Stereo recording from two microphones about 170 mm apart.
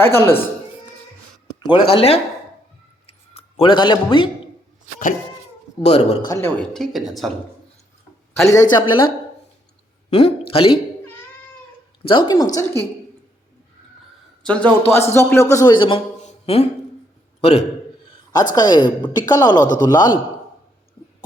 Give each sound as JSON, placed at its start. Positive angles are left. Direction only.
{"t": 0.0, "sound": "speech", "side_deg": 15}
{"t": 1.6, "sound": "speech", "side_deg": 30}
{"t": 3.1, "sound": "a sound", "side_deg": 35}
{"t": 5.8, "sound": "speech", "side_deg": 40}
{"t": 6.2, "sound": "speech", "side_deg": 20}
{"t": 6.6, "sound": "speech", "side_deg": 5}
{"t": 8.4, "sound": "a woman's voice", "side_deg": 20}
{"t": 10.1, "sound": "speech", "side_deg": 35}
{"t": 11.0, "sound": "cat", "side_deg": 10}
{"t": 12.0, "sound": "a woman's voice", "side_deg": 30}
{"t": 14.4, "sound": "speech", "side_deg": 10}
{"t": 16.2, "sound": "music", "side_deg": 35}
{"t": 17.4, "sound": "a man's voice", "side_deg": 40}
{"t": 18.5, "sound": "a woman's voice", "side_deg": 25}